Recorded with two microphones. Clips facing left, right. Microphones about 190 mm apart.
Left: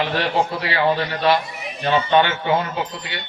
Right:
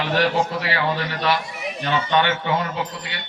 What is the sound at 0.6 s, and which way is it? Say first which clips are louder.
A man's voice: left 4 dB; 25° left (ahead or behind).